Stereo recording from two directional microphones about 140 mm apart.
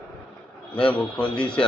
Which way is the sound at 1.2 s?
5° left (ahead or behind).